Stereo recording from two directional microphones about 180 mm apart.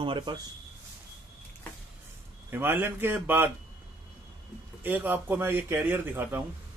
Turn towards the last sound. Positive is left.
turn(degrees=-10)  # may be behind; listen again after turning